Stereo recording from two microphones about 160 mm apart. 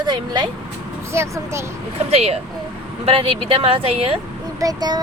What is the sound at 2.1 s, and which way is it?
Speech, 40° right (ahead or behind).